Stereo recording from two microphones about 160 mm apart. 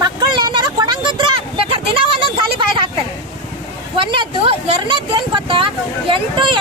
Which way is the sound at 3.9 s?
35° right (ahead or behind).